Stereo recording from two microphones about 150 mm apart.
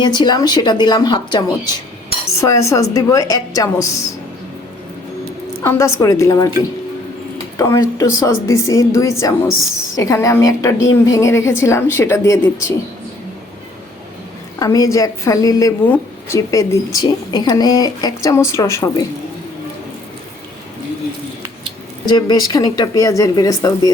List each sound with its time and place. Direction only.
0.0 s a woman's voice: 30° left (ahead or behind)
5.6 s a woman's voice: 20° left (ahead or behind)
7.5 s a woman's voice: 20° left (ahead or behind)
14.6 s a woman's voice: 25° left (ahead or behind)
22.0 s a woman's voice: 25° left (ahead or behind)